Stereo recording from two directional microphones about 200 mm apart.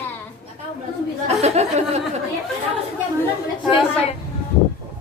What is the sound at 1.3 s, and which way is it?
Speech, 30° right (ahead or behind).